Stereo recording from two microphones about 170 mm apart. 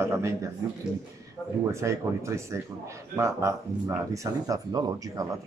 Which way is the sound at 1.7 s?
15° right (ahead or behind).